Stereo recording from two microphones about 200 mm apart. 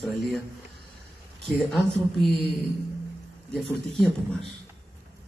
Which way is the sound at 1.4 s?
Centre (ahead or behind).